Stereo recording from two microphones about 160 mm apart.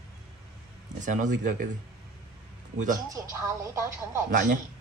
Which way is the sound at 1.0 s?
50° right (ahead or behind).